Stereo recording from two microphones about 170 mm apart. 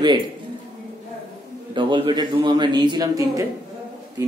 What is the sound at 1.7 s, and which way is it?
A man's voice, 30° right (ahead or behind).